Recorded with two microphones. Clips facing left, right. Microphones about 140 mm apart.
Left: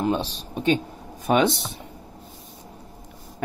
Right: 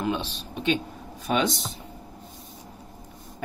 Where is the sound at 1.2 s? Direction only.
55° left (ahead or behind).